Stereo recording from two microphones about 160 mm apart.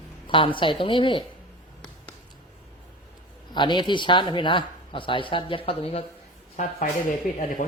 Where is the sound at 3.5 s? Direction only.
30° left (ahead or behind).